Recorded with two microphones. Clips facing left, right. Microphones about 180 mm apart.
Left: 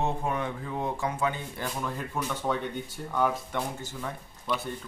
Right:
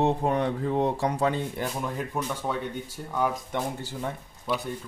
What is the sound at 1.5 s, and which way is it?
Speech, 15° right (ahead or behind).